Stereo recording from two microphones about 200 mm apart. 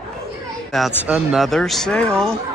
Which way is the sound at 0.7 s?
5° right (ahead or behind).